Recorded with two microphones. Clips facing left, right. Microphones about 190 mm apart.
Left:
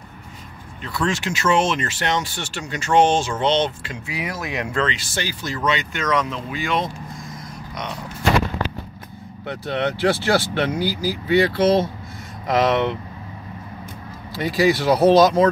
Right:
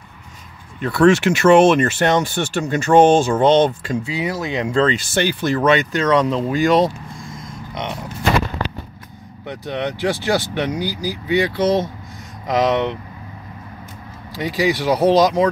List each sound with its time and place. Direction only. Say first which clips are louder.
0.7 s speech: right 11 dB; 60° right (ahead or behind)
4.0 s speech: right 5 dB; 25° right (ahead or behind)
5.1 s speech: right 9 dB; 60° right (ahead or behind)
5.9 s speech: right 6 dB; 35° right (ahead or behind)
9.5 s speech: left 1 dB; 15° right (ahead or behind)
14.3 s speech: left 1 dB; 15° right (ahead or behind)